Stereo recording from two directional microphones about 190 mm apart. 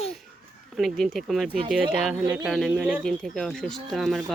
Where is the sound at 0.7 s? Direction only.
Centre (ahead or behind).